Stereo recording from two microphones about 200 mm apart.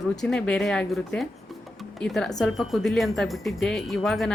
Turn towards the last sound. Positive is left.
turn(degrees=0)  # may be behind; listen again after turning